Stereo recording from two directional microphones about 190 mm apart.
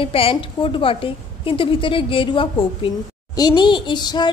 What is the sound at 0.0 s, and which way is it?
Speech, 30° left (ahead or behind).